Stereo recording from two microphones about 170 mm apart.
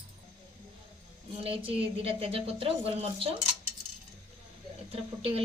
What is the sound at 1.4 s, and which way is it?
A woman's voice, 30° right (ahead or behind).